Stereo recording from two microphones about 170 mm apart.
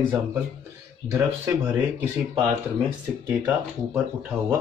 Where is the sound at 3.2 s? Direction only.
15° right (ahead or behind).